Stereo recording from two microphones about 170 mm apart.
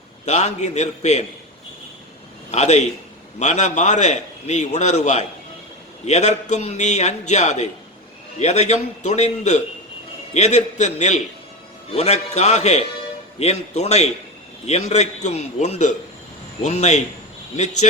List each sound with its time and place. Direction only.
0.3 s a man's voice: 40° left (ahead or behind)
2.5 s a man's voice: 40° left (ahead or behind)